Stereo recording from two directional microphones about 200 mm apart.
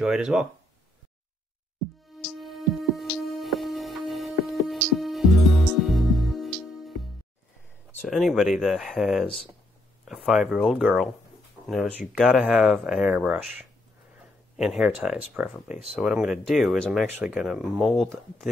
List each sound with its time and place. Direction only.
0.0 s speech: 5° right (ahead or behind)
2.1 s music: centre (ahead or behind)
8.0 s speech: centre (ahead or behind)